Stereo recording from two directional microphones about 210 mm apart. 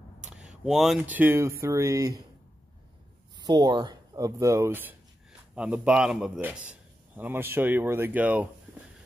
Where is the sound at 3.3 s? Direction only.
20° right (ahead or behind).